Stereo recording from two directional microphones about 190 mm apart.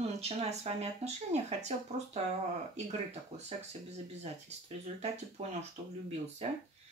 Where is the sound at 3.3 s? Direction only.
30° right (ahead or behind).